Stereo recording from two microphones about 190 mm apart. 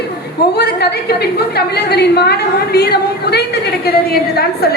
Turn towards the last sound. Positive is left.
turn(degrees=55)  # may be behind; listen again after turning